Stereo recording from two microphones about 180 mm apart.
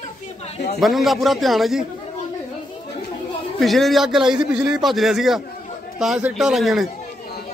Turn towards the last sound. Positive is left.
turn(degrees=0)  # may be behind; listen again after turning